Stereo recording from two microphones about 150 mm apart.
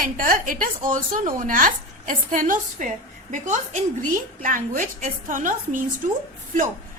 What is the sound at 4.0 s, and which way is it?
A woman's voice, 65° right (ahead or behind).